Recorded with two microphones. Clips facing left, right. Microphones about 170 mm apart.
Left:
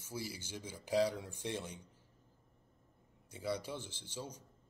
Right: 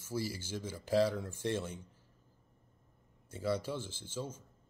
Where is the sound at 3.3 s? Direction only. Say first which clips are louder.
Right 4 dB; 15° left (ahead or behind).